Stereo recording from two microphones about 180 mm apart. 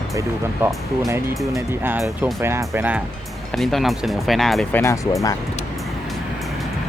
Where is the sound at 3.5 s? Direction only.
Centre (ahead or behind).